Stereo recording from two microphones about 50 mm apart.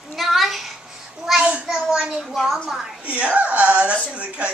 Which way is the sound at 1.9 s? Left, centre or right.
Centre.